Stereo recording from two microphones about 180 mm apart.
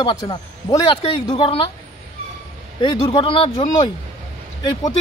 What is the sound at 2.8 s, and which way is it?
Speech, 25° left (ahead or behind).